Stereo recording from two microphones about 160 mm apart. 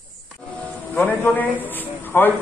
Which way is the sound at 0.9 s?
10° left (ahead or behind).